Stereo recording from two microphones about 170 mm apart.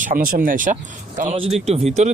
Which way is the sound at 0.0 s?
55° right (ahead or behind).